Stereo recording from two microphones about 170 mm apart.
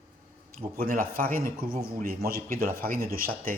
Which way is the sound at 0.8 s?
60° right (ahead or behind).